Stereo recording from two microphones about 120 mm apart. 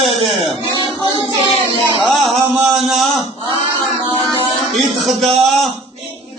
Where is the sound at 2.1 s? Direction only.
Centre (ahead or behind).